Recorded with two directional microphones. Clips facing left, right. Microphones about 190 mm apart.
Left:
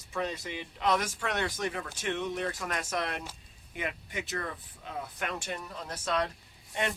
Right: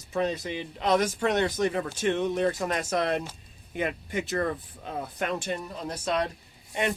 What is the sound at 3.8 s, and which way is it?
Speech, 35° right (ahead or behind).